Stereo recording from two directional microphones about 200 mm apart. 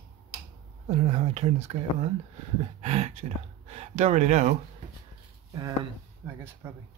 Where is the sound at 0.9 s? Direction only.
30° right (ahead or behind).